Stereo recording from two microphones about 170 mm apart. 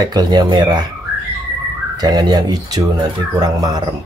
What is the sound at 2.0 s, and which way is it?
Speech, 25° right (ahead or behind).